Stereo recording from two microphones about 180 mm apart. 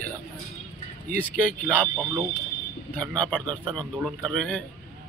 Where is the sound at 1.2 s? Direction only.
5° left (ahead or behind).